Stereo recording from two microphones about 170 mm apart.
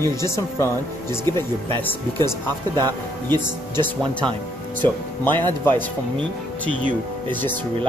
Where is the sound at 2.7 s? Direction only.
25° right (ahead or behind).